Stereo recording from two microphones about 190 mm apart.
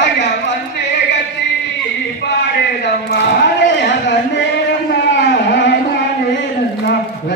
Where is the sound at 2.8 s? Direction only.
65° left (ahead or behind).